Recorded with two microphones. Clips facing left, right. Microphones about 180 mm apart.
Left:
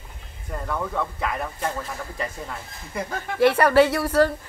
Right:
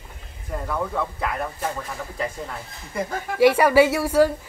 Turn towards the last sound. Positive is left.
turn(degrees=-10)  # may be behind; listen again after turning